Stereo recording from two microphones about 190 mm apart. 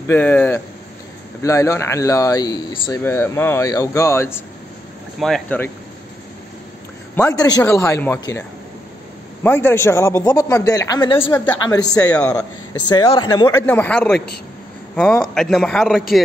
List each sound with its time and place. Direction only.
0.1 s a man's voice: 10° left (ahead or behind)
7.2 s a man's voice: 15° left (ahead or behind)
12.0 s a man's voice: 5° left (ahead or behind)
12.4 s a man's voice: 20° left (ahead or behind)
13.7 s a man's voice: 10° left (ahead or behind)